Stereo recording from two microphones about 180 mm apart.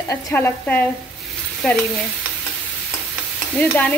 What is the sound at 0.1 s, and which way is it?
Stir, 10° left (ahead or behind).